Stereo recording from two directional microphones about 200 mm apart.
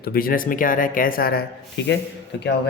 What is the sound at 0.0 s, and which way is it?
Speech, 50° left (ahead or behind).